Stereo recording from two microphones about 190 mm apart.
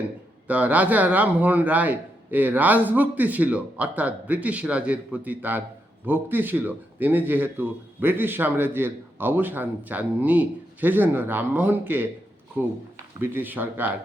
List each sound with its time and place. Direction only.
0.4 s a man's voice: 10° right (ahead or behind)